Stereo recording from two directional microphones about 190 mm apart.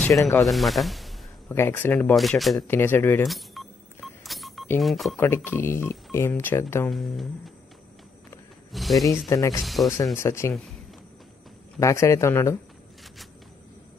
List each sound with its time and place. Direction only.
0.4 s speech: centre (ahead or behind)
1.5 s speech: 10° left (ahead or behind)
2.7 s speech: 10° left (ahead or behind)
3.3 s telephone dialing: centre (ahead or behind)
4.7 s speech: centre (ahead or behind)
5.1 s speech: 10° left (ahead or behind)
6.9 s speech: centre (ahead or behind)
8.7 s speech: centre (ahead or behind)
9.0 s speech: 15° left (ahead or behind)
9.6 s speech: centre (ahead or behind)
10.1 s speech: 15° left (ahead or behind)
11.8 s speech: 15° left (ahead or behind)